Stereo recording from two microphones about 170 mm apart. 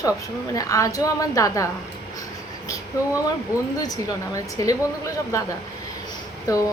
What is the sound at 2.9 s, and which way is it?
Speech, 20° left (ahead or behind).